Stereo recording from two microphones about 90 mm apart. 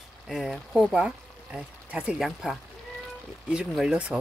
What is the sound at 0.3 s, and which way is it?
Speech, 5° right (ahead or behind).